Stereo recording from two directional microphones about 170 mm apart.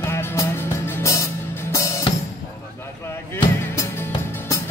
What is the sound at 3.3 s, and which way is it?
Music, 15° left (ahead or behind).